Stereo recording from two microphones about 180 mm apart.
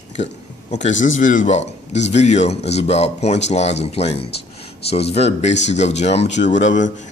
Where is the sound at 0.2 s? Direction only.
40° left (ahead or behind).